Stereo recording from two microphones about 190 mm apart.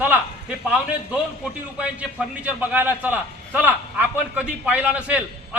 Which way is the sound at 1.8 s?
5° right (ahead or behind).